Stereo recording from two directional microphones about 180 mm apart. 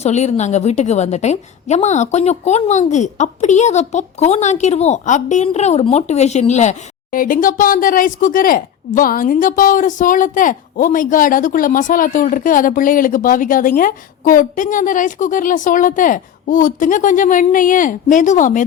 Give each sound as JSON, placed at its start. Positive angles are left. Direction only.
{"t": 0.0, "sound": "a woman's voice", "side_deg": 40}